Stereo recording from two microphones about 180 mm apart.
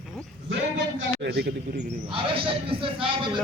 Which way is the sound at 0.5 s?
80° right.